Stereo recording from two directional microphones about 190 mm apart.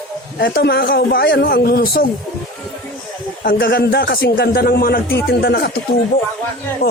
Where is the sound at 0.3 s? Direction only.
55° left (ahead or behind).